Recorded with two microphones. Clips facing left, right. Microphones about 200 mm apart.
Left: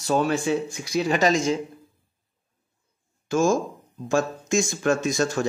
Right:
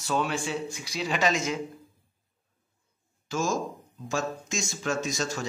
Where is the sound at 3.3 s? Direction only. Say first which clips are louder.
Left 8 dB; 50° left (ahead or behind).